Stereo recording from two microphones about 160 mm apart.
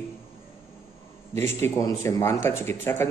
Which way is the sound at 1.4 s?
15° left (ahead or behind).